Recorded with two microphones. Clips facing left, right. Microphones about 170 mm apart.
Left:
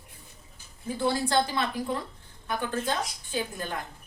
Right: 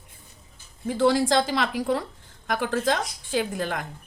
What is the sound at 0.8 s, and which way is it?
A woman's voice, 90° right.